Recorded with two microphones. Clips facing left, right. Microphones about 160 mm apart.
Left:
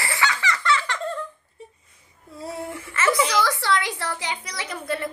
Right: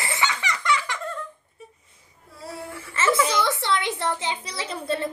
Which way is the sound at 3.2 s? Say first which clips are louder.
Left 1 dB; 25° right (ahead or behind).